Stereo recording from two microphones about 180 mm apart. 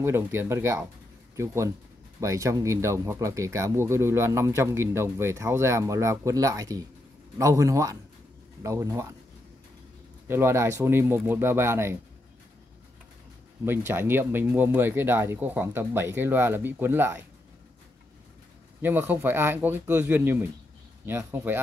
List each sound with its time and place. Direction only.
0.0 s speech: 15° right (ahead or behind)
10.2 s speech: 15° right (ahead or behind)
13.7 s speech: 10° right (ahead or behind)
18.8 s speech: 10° right (ahead or behind)